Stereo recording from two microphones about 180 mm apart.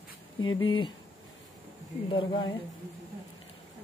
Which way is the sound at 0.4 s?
90° left.